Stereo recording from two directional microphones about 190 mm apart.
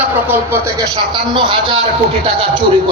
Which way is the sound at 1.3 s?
25° right (ahead or behind).